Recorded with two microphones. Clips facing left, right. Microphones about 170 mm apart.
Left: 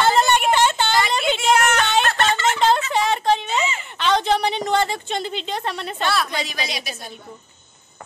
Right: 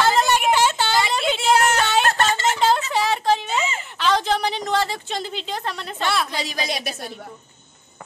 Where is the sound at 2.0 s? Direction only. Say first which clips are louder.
Even; 40° right (ahead or behind).